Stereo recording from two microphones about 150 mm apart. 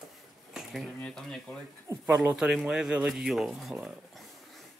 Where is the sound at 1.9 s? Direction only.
15° right (ahead or behind).